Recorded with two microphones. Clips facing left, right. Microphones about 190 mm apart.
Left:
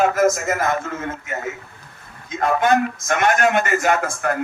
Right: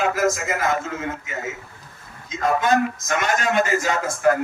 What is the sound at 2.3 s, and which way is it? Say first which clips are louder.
A man's voice: left 2 dB; 60° left (ahead or behind).